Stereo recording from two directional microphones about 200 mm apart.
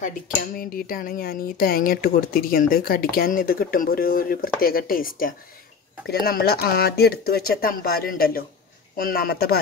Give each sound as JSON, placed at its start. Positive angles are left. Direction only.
{"t": 0.0, "sound": "speech", "side_deg": 45}